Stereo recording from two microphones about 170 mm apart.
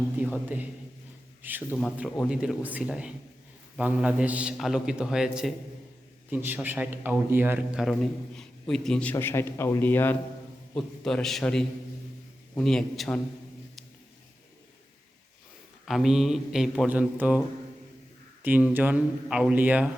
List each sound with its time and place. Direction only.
0.2 s a man's voice: 10° right (ahead or behind)
7.8 s a man's voice: centre (ahead or behind)
15.9 s a man's voice: centre (ahead or behind)
18.4 s a man's voice: 10° right (ahead or behind)